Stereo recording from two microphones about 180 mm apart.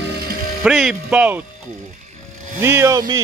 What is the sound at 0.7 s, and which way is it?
Speech, 5° right (ahead or behind).